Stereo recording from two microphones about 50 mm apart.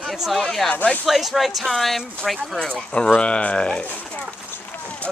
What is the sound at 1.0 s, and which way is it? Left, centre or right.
Speech, centre.